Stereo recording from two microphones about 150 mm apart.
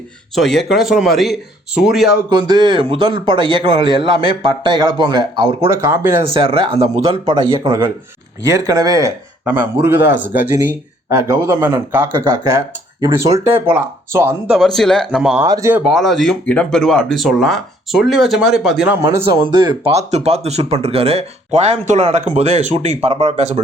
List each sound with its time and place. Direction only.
0.3 s speech: centre (ahead or behind)
2.3 s speech: 30° right (ahead or behind)
6.3 s speech: 35° right (ahead or behind); by 14.5 s 15° right (ahead or behind)
14.5 s speech: centre (ahead or behind)
15.4 s speech: 25° right (ahead or behind)
15.8 s speech: centre (ahead or behind)
18.9 s speech: 20° right (ahead or behind)
19.4 s speech: 30° right (ahead or behind)
19.9 s speech: 50° right (ahead or behind)